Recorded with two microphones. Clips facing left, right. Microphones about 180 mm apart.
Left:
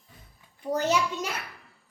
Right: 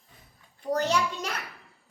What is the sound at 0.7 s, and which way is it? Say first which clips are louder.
Speech: left 1 dB; 5° left (ahead or behind).